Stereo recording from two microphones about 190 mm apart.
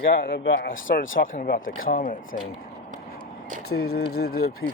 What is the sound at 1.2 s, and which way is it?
Speech, 50° left (ahead or behind).